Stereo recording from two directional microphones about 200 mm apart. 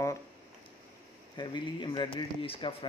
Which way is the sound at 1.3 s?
20° left (ahead or behind).